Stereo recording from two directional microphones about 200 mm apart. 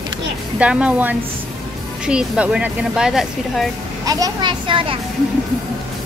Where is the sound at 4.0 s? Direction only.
20° right (ahead or behind).